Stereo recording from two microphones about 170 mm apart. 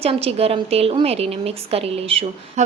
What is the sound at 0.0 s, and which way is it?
A woman's voice, 35° right (ahead or behind).